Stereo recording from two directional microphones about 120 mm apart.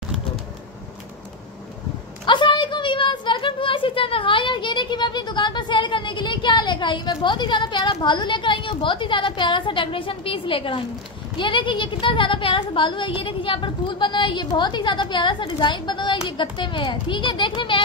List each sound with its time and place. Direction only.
2.2 s speech: 40° left (ahead or behind)